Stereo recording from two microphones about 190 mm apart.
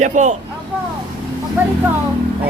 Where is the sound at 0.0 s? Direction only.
40° right (ahead or behind).